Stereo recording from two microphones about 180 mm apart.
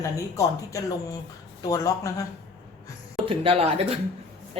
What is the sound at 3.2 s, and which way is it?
Speech, 30° right (ahead or behind).